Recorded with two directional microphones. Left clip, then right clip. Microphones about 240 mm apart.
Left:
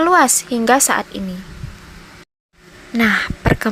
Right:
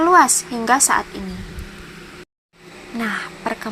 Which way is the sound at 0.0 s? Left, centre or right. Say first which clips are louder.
Even; left.